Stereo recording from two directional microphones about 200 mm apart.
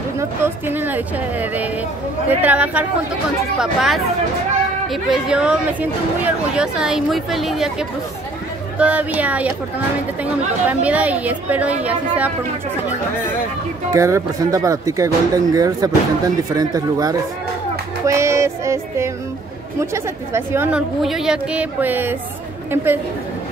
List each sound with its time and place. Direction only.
0.2 s a woman's voice: 10° right (ahead or behind)
8.7 s a woman's voice: 5° right (ahead or behind)
13.9 s a woman's voice: 15° right (ahead or behind)